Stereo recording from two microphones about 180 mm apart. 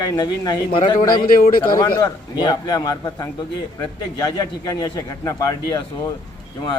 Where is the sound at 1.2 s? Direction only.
50° left (ahead or behind).